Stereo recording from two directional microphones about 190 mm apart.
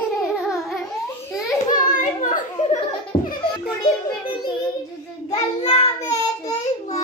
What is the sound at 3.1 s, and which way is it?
Music, 10° left (ahead or behind).